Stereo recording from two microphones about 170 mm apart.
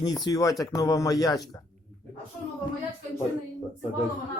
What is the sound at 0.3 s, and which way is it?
A man's voice, 20° left (ahead or behind).